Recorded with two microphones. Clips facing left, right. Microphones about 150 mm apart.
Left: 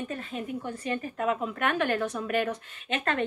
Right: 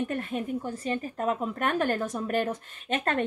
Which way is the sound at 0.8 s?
35° right (ahead or behind).